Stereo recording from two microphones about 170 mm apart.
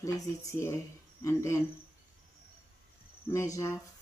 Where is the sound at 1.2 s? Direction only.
20° left (ahead or behind).